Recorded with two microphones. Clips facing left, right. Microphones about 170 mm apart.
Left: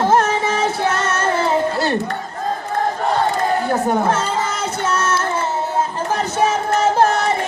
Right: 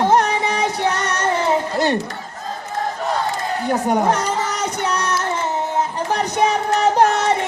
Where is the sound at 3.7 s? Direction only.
15° right (ahead or behind).